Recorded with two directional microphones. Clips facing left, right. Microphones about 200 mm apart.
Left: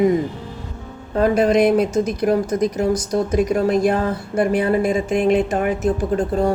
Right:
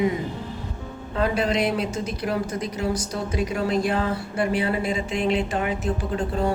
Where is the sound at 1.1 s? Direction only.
45° left (ahead or behind).